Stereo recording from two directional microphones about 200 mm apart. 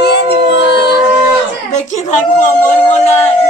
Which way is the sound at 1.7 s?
35° left (ahead or behind).